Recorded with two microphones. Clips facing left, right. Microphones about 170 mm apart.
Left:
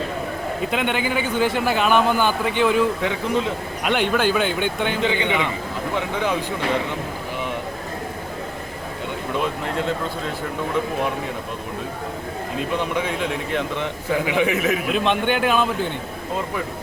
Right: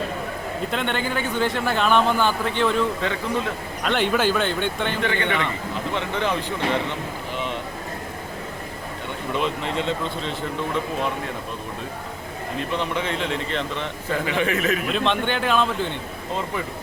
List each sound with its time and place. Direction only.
0.7 s speech: 5° left (ahead or behind)
3.9 s a man's voice: centre (ahead or behind)
9.3 s speech: 5° left (ahead or behind)
12.7 s speech: 10° left (ahead or behind)